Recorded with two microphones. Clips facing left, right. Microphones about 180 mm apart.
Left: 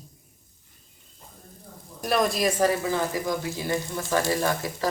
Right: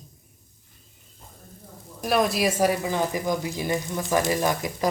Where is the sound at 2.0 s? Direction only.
Centre (ahead or behind).